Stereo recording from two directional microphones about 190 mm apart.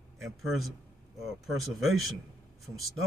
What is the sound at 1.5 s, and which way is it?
Speech, centre (ahead or behind).